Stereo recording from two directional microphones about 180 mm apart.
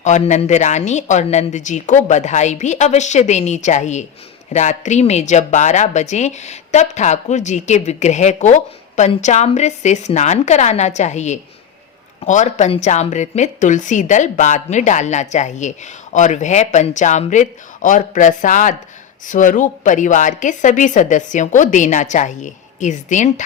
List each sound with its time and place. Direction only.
0.0 s a woman's voice: 40° left (ahead or behind)